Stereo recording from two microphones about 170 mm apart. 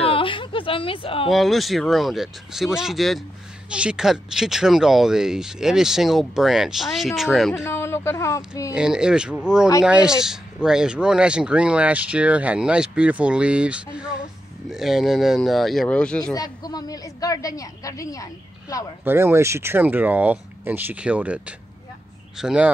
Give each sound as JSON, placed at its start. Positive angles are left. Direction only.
{"t": 0.0, "sound": "a sound", "side_deg": 30}
{"t": 1.3, "sound": "speech", "side_deg": 0}
{"t": 7.6, "sound": "speech", "side_deg": 15}
{"t": 8.7, "sound": "speech", "side_deg": -5}
{"t": 16.3, "sound": "a woman's voice", "side_deg": 20}
{"t": 19.0, "sound": "speech", "side_deg": -15}